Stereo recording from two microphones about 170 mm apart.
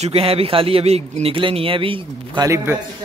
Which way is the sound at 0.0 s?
35° right (ahead or behind).